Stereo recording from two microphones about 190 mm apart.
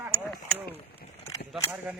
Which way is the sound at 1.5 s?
Centre (ahead or behind).